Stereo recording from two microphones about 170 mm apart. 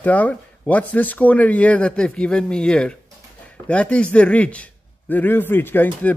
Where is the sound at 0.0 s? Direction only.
10° left (ahead or behind).